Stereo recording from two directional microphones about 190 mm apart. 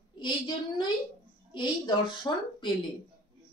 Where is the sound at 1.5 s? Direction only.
25° left (ahead or behind).